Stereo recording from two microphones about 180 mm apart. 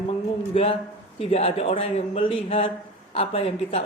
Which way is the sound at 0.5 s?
30° left (ahead or behind).